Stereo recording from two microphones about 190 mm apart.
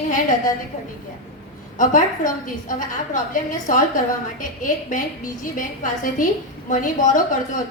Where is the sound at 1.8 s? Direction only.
45° left (ahead or behind).